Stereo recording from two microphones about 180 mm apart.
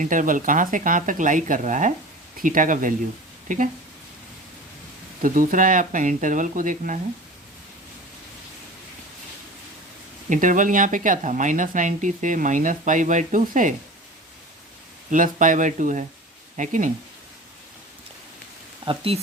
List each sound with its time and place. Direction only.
0.0 s speech: 45° right (ahead or behind)
5.2 s speech: 50° right (ahead or behind)
10.2 s speech: 45° right (ahead or behind)
15.1 s speech: 45° right (ahead or behind)
18.9 s speech: 30° right (ahead or behind)